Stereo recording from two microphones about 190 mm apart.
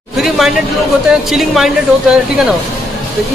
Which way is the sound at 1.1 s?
Centre (ahead or behind).